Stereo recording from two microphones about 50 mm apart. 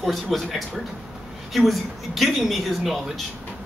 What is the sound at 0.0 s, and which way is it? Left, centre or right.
Speech, centre.